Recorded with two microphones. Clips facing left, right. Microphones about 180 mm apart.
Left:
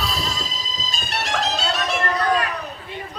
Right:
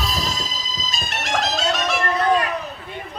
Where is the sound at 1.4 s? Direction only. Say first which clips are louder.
Right 3 dB; 35° left (ahead or behind).